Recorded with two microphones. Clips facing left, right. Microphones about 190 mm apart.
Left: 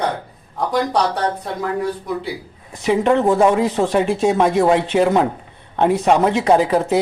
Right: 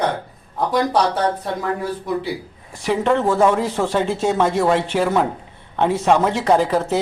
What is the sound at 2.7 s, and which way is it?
Speech, 20° left (ahead or behind).